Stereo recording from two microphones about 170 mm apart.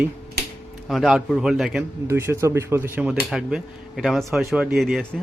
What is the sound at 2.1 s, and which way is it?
Speech, 15° right (ahead or behind).